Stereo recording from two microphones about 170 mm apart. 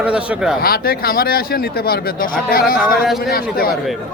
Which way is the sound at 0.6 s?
60° left (ahead or behind).